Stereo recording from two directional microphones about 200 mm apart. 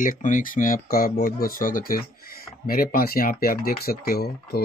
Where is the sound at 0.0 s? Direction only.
40° left (ahead or behind).